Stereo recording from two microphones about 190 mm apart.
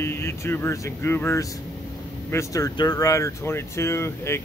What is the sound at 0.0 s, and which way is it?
Speech, 15° left (ahead or behind).